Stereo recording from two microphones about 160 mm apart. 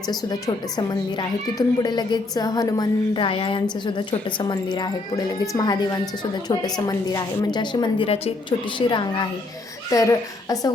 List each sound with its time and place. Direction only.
0.1 s a child's voice: 25° left (ahead or behind)